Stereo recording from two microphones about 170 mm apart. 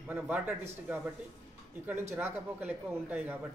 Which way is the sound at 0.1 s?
10° right (ahead or behind).